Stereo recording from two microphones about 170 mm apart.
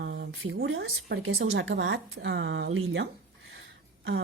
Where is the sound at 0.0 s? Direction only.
85° right.